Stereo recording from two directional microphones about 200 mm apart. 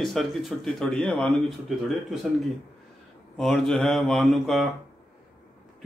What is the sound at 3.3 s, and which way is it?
Speech, centre (ahead or behind).